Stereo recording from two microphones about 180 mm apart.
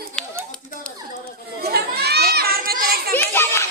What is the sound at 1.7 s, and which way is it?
Children playing, 65° right (ahead or behind).